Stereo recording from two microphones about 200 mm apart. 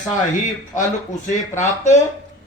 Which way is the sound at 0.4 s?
40° left (ahead or behind).